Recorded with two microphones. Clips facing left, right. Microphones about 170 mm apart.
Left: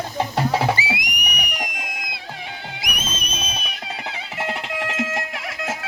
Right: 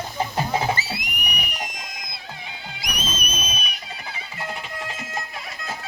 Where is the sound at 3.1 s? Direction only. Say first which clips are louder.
Even; 25° left (ahead or behind).